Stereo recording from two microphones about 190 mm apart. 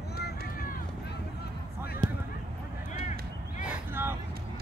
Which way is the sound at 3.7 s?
10° right (ahead or behind).